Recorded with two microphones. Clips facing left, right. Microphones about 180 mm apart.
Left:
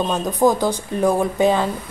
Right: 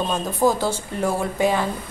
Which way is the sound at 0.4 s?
15° left (ahead or behind).